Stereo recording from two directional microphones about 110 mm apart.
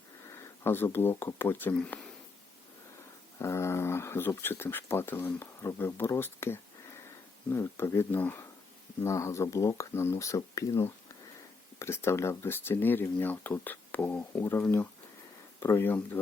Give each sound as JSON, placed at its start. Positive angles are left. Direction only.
{"t": 0.6, "sound": "speech", "side_deg": 20}
{"t": 3.3, "sound": "speech", "side_deg": 25}